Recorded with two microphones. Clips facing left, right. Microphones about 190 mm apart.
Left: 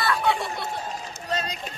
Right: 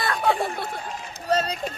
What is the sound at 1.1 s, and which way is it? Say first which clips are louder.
Run: right 8 dB; 40° right (ahead or behind).